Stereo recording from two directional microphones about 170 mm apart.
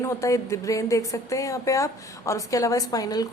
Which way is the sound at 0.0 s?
20° left (ahead or behind).